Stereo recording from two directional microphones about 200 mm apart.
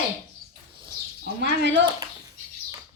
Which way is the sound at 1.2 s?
55° right (ahead or behind).